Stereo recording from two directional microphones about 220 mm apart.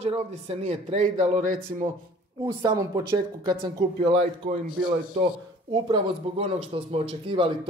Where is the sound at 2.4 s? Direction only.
20° right (ahead or behind).